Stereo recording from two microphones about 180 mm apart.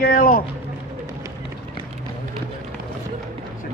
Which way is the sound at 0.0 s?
50° left (ahead or behind).